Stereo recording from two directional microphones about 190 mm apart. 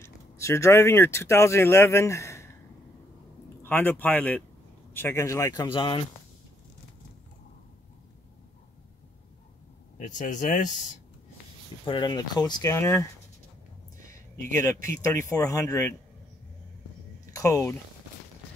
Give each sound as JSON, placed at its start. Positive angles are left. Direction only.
{"t": 0.0, "sound": "speech", "side_deg": 15}
{"t": 3.6, "sound": "speech", "side_deg": 10}
{"t": 9.9, "sound": "speech", "side_deg": 40}
{"t": 11.8, "sound": "speech", "side_deg": 25}
{"t": 14.0, "sound": "a sound", "side_deg": 15}
{"t": 15.0, "sound": "speech", "side_deg": 15}
{"t": 17.3, "sound": "speech", "side_deg": 15}